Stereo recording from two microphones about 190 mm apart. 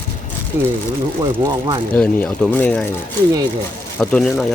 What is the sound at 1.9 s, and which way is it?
Speech, 5° left (ahead or behind).